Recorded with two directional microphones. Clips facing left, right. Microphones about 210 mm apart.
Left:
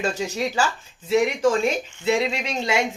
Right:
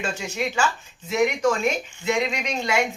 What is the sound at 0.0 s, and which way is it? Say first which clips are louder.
Speech: left 3 dB; 35° left (ahead or behind).